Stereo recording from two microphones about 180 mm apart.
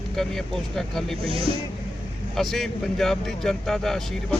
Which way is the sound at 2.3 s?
Centre (ahead or behind).